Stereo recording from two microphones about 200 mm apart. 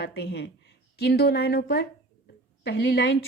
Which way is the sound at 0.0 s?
55° left (ahead or behind).